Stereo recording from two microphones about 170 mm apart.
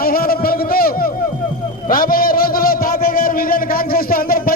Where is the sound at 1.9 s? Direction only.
55° left (ahead or behind).